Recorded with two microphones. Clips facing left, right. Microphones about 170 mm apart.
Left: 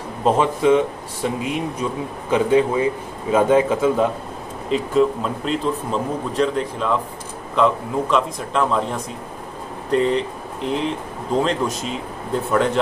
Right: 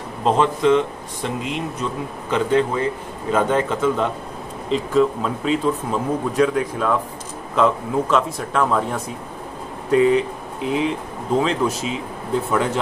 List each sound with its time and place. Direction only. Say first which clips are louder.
0.2 s speech: even; 10° left (ahead or behind)